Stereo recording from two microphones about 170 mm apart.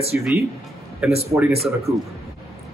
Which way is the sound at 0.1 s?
10° right (ahead or behind).